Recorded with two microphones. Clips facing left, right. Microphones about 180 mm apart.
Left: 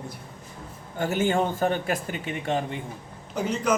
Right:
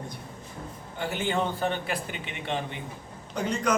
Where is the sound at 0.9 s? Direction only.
45° left (ahead or behind).